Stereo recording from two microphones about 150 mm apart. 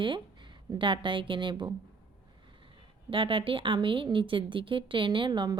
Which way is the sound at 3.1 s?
35° right (ahead or behind).